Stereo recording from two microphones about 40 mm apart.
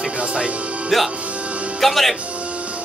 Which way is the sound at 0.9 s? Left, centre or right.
Centre.